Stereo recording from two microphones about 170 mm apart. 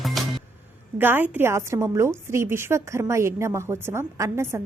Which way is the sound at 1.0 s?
10° right (ahead or behind).